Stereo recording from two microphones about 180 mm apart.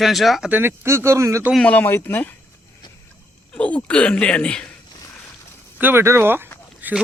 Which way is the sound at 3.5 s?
10° left (ahead or behind).